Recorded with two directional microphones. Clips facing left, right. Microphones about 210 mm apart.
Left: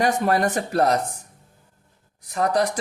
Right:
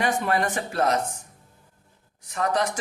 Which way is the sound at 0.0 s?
40° left (ahead or behind).